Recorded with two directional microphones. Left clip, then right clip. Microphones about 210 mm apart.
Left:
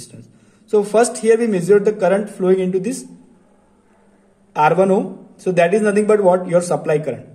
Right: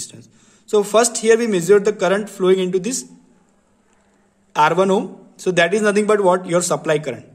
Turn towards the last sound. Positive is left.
turn(degrees=-35)  # may be behind; listen again after turning